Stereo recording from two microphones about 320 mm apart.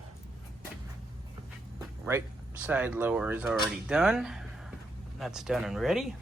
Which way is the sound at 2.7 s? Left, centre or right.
Centre.